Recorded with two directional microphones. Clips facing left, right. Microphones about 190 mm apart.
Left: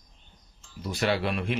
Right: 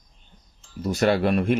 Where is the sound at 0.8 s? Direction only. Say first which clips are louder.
Right 6 dB; 45° right (ahead or behind).